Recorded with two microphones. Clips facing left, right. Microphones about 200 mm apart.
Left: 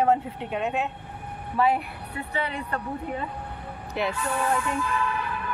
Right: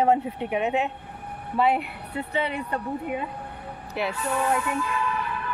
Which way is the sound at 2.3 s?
10° right (ahead or behind).